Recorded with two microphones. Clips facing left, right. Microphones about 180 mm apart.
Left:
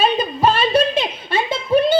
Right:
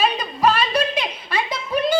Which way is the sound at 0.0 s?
30° left (ahead or behind).